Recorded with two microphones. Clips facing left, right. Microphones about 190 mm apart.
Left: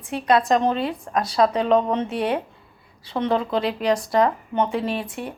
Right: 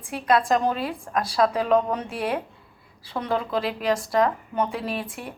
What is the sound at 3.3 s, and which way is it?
A woman's voice, centre (ahead or behind).